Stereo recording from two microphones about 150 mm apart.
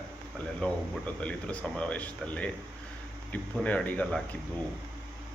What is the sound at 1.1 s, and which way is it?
Speech, 10° left (ahead or behind).